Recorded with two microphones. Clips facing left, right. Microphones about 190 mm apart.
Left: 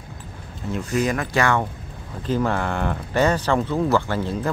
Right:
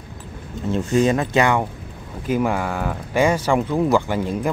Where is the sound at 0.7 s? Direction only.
30° right (ahead or behind).